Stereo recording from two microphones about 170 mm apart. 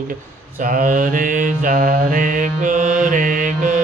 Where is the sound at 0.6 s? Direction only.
50° right (ahead or behind).